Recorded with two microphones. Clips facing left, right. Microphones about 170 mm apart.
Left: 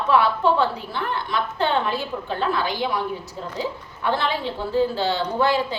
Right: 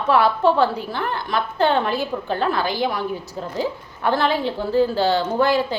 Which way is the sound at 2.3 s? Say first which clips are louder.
Right 1 dB; 45° right (ahead or behind).